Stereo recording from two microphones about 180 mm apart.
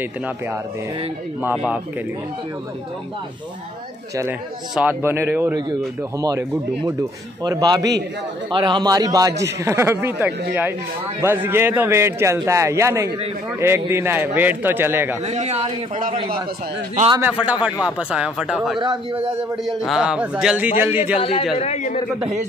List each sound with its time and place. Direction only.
4.2 s a man's voice: 10° right (ahead or behind)
15.2 s speech: 40° right (ahead or behind)
17.2 s a man's voice: 5° right (ahead or behind)
21.2 s a man's voice: 30° left (ahead or behind)